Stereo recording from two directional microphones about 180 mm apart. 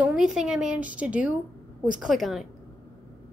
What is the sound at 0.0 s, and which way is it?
A woman's voice, 5° right (ahead or behind).